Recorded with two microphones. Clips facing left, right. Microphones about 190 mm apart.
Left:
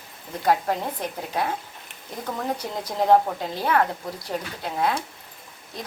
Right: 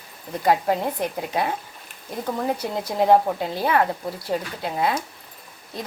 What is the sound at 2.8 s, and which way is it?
Speech, 10° right (ahead or behind).